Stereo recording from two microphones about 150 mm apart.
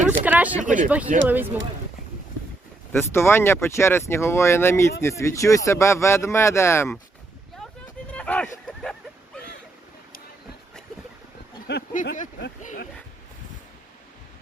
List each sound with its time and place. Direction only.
0.3 s speech: 10° right (ahead or behind)
0.6 s speech: 60° right (ahead or behind)
0.9 s speech: 10° right (ahead or behind)
2.9 s speech: 15° left (ahead or behind)
8.1 s a sound: 10° left (ahead or behind)
11.7 s speech: 75° left (ahead or behind)